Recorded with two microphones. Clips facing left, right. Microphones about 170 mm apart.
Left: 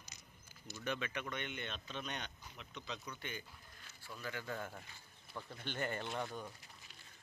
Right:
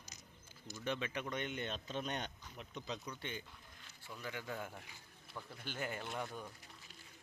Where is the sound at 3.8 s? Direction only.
15° right (ahead or behind).